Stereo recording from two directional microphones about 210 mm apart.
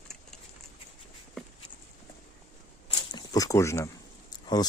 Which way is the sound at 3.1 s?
20° left (ahead or behind).